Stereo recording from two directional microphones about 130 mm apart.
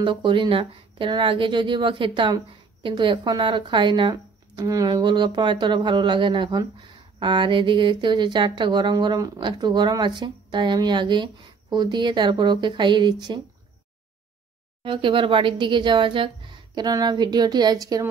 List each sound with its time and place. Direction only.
0.0 s speech: 40° right (ahead or behind)
14.8 s speech: 40° right (ahead or behind)